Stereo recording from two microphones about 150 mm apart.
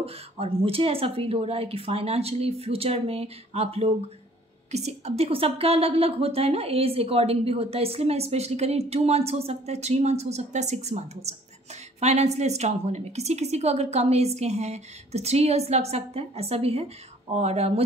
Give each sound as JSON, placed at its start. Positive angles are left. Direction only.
{"t": 0.0, "sound": "a woman's voice", "side_deg": -40}